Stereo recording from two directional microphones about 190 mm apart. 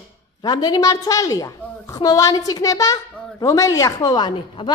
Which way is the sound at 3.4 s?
15° left (ahead or behind).